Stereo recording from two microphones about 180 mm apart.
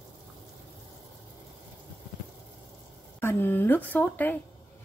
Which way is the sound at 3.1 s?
10° left (ahead or behind).